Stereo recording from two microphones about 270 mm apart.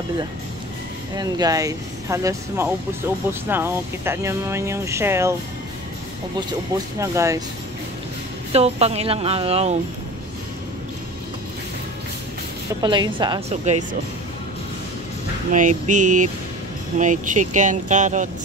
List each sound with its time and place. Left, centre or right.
1.1 s speech: centre
7.0 s speech: centre
8.5 s speech: right
12.8 s speech: centre
15.5 s speech: right